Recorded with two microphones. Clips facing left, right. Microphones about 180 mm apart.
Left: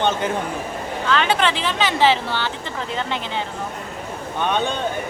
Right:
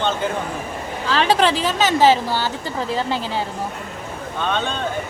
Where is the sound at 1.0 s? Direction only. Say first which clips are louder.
Right 2 dB; 35° right (ahead or behind).